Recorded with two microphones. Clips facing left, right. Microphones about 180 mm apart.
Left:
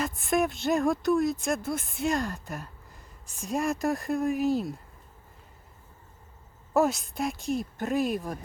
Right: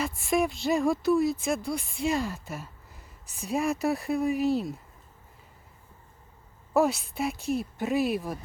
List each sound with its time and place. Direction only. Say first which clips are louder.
0.0 s speech: even; centre (ahead or behind)
6.7 s speech: even; centre (ahead or behind)